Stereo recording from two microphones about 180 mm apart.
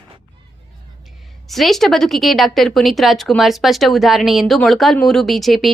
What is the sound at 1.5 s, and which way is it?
Speech, centre (ahead or behind).